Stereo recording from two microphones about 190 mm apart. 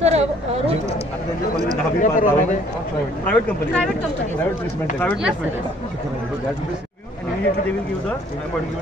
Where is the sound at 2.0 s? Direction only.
45° left (ahead or behind).